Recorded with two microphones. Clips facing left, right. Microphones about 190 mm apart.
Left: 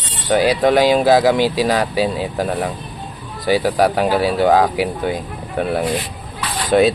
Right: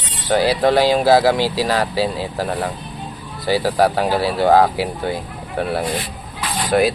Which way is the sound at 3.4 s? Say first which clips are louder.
Left 1 dB; 15° left (ahead or behind).